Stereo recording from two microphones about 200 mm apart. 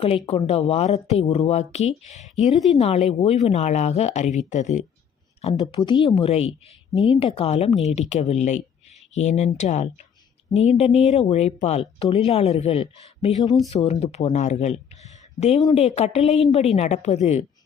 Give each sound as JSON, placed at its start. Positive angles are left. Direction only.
{"t": 0.3, "sound": "speech", "side_deg": 30}